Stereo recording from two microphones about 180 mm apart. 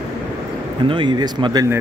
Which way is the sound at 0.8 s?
25° right (ahead or behind).